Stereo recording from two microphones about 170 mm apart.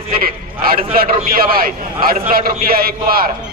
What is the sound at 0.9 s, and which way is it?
A man's voice, 60° right (ahead or behind).